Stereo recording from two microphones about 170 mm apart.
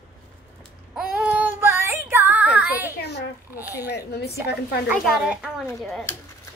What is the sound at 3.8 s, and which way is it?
Speech, 75° left (ahead or behind).